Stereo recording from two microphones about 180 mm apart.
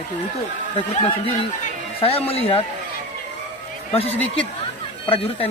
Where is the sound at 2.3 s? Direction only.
30° left (ahead or behind).